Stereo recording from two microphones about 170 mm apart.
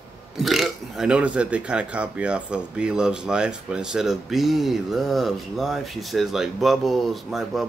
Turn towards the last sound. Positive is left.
turn(degrees=0)  # may be behind; listen again after turning